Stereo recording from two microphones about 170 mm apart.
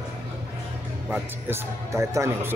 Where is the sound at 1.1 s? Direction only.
15° right (ahead or behind).